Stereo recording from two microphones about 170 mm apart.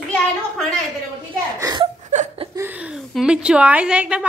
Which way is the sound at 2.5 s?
10° right (ahead or behind).